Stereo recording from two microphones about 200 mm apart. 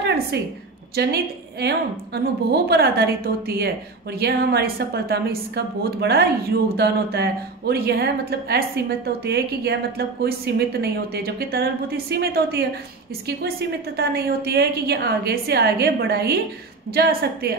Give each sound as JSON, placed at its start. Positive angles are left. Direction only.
{"t": 0.9, "sound": "a woman's voice", "side_deg": -55}